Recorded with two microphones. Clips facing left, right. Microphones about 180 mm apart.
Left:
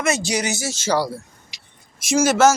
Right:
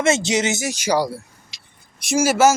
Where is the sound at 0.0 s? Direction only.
25° right (ahead or behind).